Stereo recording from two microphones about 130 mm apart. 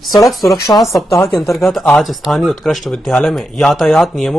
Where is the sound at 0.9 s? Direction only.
25° left (ahead or behind).